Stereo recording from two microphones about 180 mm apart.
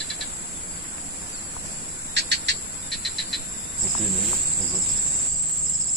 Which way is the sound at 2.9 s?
Centre (ahead or behind).